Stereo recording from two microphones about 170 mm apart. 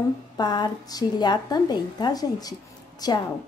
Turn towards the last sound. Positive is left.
turn(degrees=25)  # may be behind; listen again after turning